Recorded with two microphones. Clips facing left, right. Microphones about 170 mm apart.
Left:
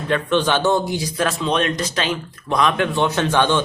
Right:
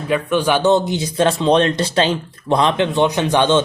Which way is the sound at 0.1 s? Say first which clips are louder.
Right 2 dB; 10° right (ahead or behind).